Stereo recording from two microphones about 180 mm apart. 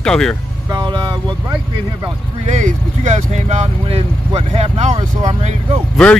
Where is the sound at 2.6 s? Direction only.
40° right (ahead or behind).